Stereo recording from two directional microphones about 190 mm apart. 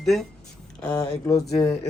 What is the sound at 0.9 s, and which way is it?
Speech, 15° left (ahead or behind).